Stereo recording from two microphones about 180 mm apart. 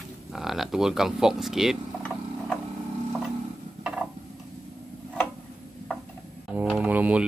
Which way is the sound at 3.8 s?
5° right (ahead or behind).